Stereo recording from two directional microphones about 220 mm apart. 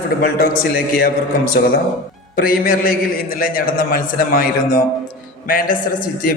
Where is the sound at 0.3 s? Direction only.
40° left (ahead or behind).